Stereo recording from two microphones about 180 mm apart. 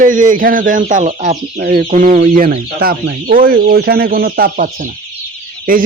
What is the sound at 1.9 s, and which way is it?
Speech, 45° right (ahead or behind).